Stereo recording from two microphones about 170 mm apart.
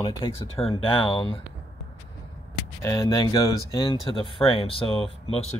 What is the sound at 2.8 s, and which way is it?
Speech, 20° left (ahead or behind).